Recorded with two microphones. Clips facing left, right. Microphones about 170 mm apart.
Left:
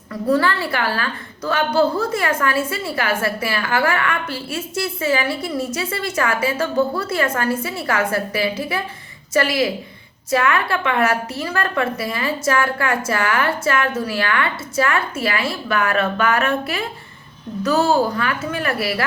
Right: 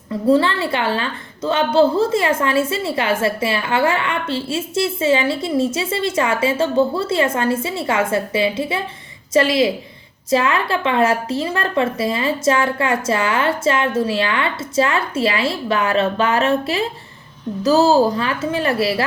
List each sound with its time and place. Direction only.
0.1 s a woman's voice: 25° right (ahead or behind)